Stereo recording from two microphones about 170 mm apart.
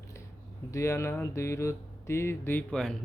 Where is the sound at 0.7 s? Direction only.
15° left (ahead or behind).